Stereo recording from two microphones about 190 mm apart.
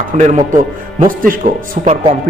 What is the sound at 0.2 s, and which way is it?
A man's voice, 40° right (ahead or behind).